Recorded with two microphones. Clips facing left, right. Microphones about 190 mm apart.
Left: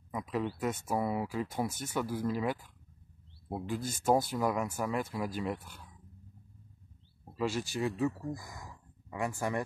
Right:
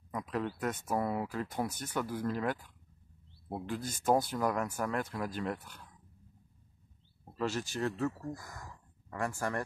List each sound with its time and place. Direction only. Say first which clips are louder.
0.1 s speech: left 1 dB; 5° left (ahead or behind)
7.3 s speech: left 1 dB; 10° left (ahead or behind)
9.1 s speech: left 1 dB; 15° left (ahead or behind)